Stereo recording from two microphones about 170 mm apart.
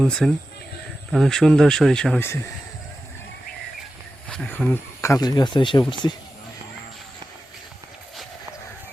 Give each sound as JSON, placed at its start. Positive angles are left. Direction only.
{"t": 0.0, "sound": "speech", "side_deg": 0}
{"t": 4.3, "sound": "speech", "side_deg": 10}